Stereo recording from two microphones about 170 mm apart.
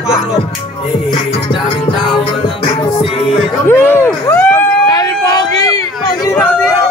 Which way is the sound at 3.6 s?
15° left (ahead or behind).